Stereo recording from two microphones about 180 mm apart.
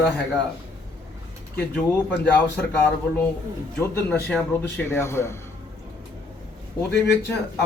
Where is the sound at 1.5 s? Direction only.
10° left (ahead or behind).